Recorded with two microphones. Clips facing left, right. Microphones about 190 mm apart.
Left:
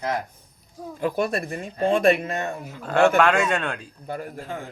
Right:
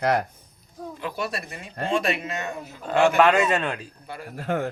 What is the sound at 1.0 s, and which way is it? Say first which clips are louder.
Speech: left 7 dB; 50° left (ahead or behind).